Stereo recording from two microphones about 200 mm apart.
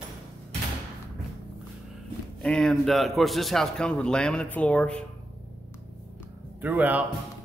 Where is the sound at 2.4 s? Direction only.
5° left (ahead or behind).